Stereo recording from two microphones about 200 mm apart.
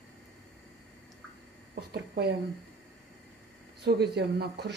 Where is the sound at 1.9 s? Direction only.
55° right (ahead or behind).